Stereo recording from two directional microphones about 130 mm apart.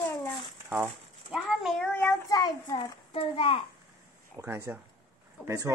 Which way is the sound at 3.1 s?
45° left (ahead or behind).